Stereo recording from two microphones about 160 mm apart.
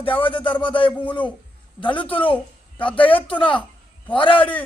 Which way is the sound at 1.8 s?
30° left (ahead or behind).